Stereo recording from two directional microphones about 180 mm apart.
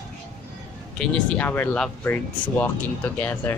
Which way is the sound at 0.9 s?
10° left (ahead or behind).